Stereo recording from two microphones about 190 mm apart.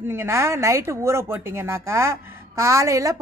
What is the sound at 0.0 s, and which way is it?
Speech, 10° right (ahead or behind).